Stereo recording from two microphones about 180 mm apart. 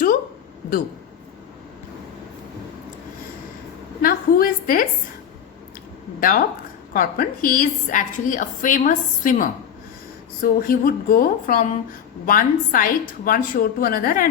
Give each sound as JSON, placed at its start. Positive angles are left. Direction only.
{"t": 4.0, "sound": "a woman's voice", "side_deg": 50}
{"t": 6.1, "sound": "a woman's voice", "side_deg": 50}